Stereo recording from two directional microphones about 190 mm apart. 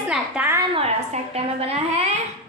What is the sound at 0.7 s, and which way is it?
A woman's voice, 35° right (ahead or behind).